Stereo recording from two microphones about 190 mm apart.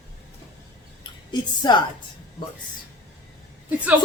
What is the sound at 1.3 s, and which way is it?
Speech, 25° left (ahead or behind).